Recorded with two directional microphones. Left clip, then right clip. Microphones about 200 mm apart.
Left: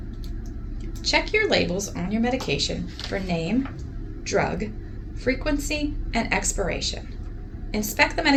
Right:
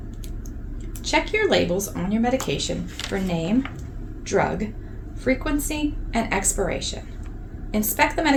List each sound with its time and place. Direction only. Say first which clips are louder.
1.0 s a woman's voice: even; 50° right (ahead or behind)